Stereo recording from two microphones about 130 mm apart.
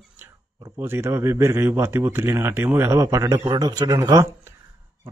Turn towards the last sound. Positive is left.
turn(degrees=-25)  # may be behind; listen again after turning